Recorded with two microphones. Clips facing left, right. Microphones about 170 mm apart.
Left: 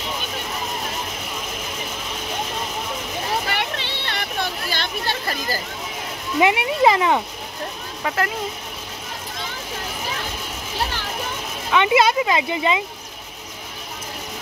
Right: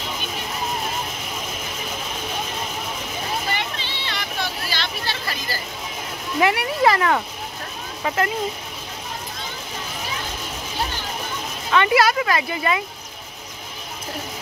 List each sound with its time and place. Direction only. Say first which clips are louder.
3.4 s a sound: left 1 dB; 65° left (ahead or behind); by 5.6 s 45° left (ahead or behind)
6.4 s speech: left 2 dB; 20° left (ahead or behind)
11.7 s speech: left 1 dB; 20° left (ahead or behind)